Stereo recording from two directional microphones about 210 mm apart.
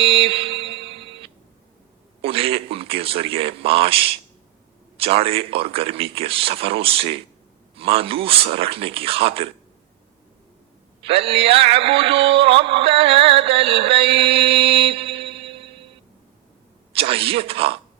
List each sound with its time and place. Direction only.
0.0 s mantra: 25° right (ahead or behind)
2.2 s speech: 25° right (ahead or behind)
11.0 s a sound: 25° right (ahead or behind)
16.9 s speech: 25° right (ahead or behind)